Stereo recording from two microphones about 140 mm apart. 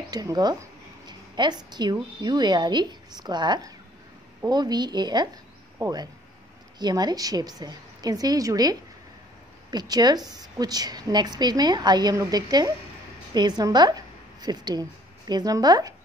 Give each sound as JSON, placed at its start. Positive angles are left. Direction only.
{"t": 0.1, "sound": "a woman's voice", "side_deg": -25}
{"t": 1.0, "sound": "a sound", "side_deg": -30}
{"t": 2.2, "sound": "a woman's voice", "side_deg": -30}